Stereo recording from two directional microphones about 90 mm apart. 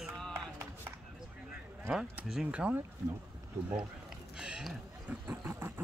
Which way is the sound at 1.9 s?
10° right (ahead or behind).